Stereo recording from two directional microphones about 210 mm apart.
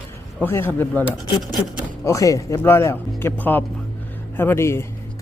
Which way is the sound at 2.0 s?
15° left (ahead or behind).